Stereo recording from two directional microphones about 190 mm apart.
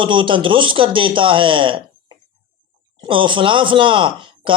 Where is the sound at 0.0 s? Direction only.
25° right (ahead or behind).